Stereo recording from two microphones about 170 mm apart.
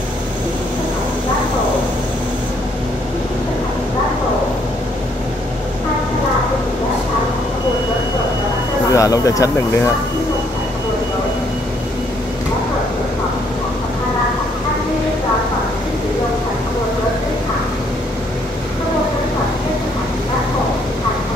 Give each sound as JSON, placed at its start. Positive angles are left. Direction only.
{"t": 8.9, "sound": "speech", "side_deg": 20}